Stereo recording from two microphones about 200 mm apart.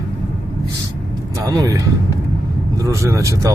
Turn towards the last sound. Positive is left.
turn(degrees=-15)  # may be behind; listen again after turning